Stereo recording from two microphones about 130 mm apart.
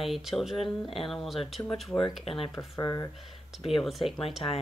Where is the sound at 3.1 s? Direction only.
Centre (ahead or behind).